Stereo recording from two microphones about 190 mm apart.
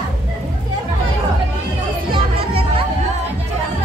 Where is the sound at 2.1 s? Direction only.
30° right (ahead or behind).